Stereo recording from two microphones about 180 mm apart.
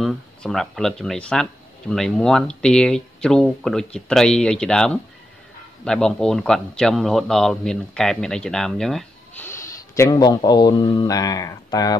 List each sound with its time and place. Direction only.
0.0 s speech: centre (ahead or behind)
9.5 s speech: 15° left (ahead or behind)